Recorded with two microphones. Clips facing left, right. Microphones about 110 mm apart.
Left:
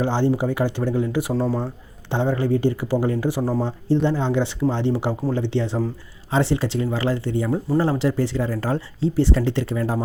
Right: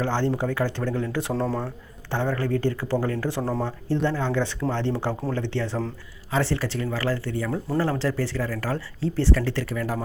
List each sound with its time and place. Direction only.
0.0 s speech: 15° left (ahead or behind)
2.0 s speech: 20° left (ahead or behind)